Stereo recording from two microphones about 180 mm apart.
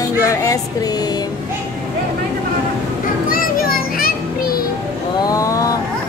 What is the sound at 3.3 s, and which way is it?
Children playing, 55° left (ahead or behind).